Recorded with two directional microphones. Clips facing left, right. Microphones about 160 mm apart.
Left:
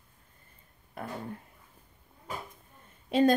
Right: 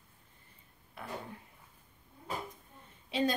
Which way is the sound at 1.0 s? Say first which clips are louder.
Left 6 dB; 45° left (ahead or behind).